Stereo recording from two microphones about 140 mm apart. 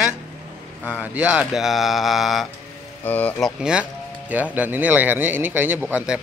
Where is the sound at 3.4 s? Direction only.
5° right (ahead or behind).